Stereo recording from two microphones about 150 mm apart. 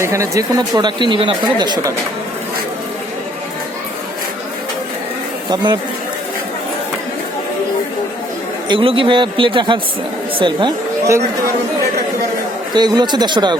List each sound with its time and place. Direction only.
0.0 s speech: 20° right (ahead or behind)
5.5 s speech: 30° right (ahead or behind)
8.7 s a man's voice: 35° right (ahead or behind)
12.7 s speech: 30° right (ahead or behind)